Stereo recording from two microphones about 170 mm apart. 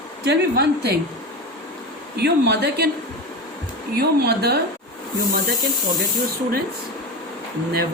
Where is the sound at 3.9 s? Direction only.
70° right (ahead or behind).